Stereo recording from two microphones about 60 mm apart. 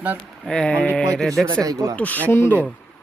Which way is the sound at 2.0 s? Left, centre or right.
Left.